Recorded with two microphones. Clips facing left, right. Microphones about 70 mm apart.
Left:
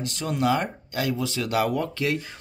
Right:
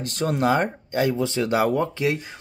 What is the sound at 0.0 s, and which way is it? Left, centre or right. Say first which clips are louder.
Speech: right 3 dB; right.